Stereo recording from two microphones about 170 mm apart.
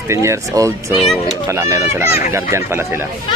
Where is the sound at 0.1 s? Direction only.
15° right (ahead or behind).